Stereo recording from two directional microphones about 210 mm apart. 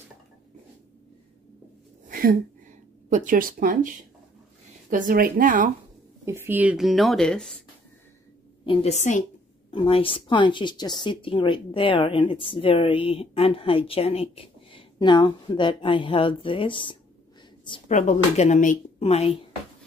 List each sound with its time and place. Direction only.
2.0 s a sound: 45° right (ahead or behind)
3.1 s speech: 40° right (ahead or behind)
6.2 s a woman's voice: 10° right (ahead or behind); by 7.6 s 5° left (ahead or behind)
8.6 s a woman's voice: 30° left (ahead or behind)